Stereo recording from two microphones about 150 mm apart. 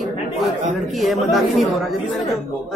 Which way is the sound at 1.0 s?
Centre (ahead or behind).